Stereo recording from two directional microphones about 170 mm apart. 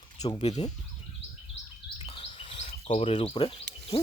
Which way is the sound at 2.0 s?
35° left (ahead or behind).